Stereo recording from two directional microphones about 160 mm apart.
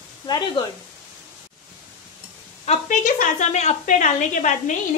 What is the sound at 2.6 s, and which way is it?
A woman's voice, 45° left (ahead or behind).